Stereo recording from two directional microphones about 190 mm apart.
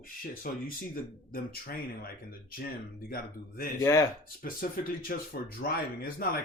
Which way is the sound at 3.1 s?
50° left (ahead or behind).